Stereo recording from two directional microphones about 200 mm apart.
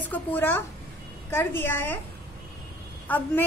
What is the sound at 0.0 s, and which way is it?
A woman's voice, 10° left (ahead or behind).